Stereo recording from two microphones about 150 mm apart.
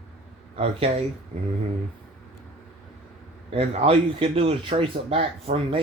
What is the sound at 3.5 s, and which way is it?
Speech, 40° right (ahead or behind).